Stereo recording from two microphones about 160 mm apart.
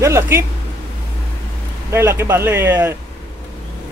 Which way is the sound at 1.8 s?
15° right (ahead or behind).